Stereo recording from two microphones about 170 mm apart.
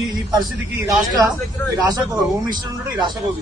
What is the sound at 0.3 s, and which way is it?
Speech, 25° right (ahead or behind).